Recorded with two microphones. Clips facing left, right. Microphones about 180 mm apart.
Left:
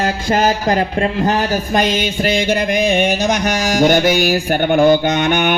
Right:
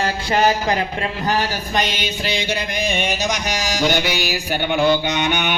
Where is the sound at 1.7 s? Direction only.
50° left (ahead or behind).